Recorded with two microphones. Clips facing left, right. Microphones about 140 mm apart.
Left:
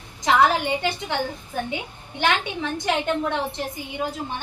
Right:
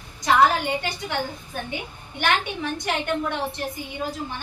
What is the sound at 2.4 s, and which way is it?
A woman's voice, 20° left (ahead or behind).